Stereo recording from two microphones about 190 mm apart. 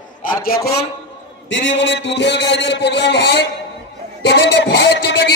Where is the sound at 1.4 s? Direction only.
75° left (ahead or behind).